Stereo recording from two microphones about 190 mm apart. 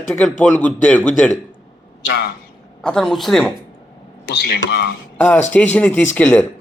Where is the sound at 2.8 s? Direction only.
5° left (ahead or behind).